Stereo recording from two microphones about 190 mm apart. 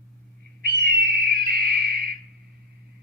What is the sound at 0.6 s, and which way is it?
Owl, 55° right (ahead or behind).